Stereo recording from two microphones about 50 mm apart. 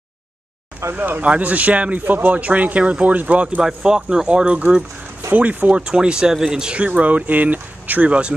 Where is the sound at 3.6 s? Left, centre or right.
Centre.